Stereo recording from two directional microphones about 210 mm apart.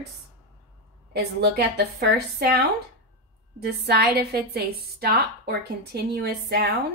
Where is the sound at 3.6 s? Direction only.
50° right (ahead or behind).